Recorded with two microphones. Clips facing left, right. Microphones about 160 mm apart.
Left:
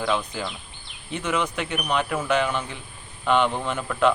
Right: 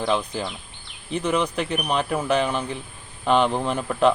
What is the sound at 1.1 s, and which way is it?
Speech, 35° right (ahead or behind).